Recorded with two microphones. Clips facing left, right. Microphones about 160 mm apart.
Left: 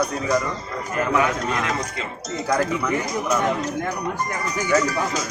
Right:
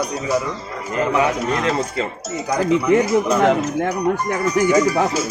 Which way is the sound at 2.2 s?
5° right (ahead or behind).